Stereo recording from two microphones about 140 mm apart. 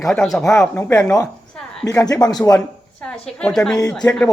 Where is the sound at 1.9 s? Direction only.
25° left (ahead or behind).